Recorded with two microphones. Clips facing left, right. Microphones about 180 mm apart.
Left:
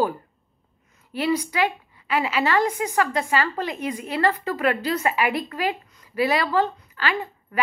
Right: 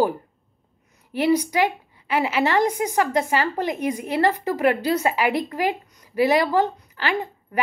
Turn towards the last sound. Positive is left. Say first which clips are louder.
# right 2 dB
turn(degrees=-20)  # may be behind; listen again after turning